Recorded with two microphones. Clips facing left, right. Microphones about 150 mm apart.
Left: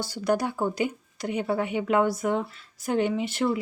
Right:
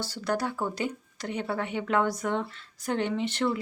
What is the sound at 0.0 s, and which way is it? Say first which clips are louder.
A woman's voice: left 4 dB; 15° left (ahead or behind).